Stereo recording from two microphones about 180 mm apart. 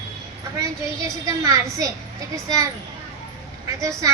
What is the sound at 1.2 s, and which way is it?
A child's voice, 20° right (ahead or behind).